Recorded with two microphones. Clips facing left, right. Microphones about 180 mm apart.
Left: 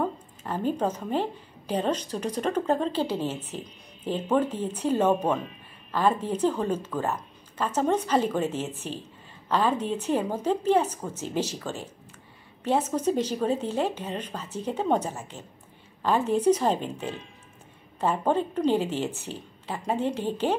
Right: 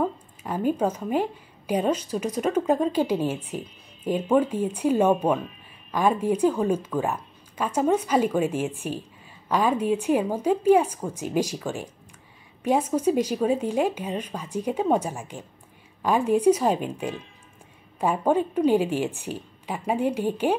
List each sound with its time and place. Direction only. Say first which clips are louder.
0.0 s a woman's voice: right 2 dB; 10° right (ahead or behind)